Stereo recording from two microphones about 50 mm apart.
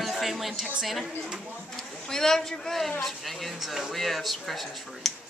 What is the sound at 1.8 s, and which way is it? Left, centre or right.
Speech, centre.